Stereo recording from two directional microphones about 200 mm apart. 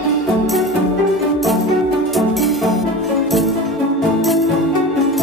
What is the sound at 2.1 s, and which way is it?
Music, centre (ahead or behind).